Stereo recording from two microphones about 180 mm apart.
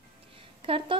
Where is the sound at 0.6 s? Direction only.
30° right (ahead or behind).